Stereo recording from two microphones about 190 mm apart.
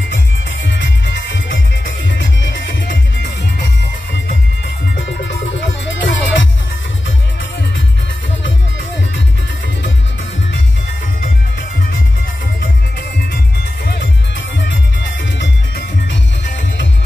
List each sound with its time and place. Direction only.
0.7 s music: 70° left (ahead or behind)
5.2 s music: 70° left (ahead or behind)
15.3 s music: 70° left (ahead or behind)